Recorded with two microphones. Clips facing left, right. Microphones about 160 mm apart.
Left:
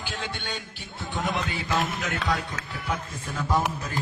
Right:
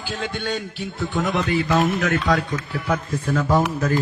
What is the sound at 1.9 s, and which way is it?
Speech, 90° right.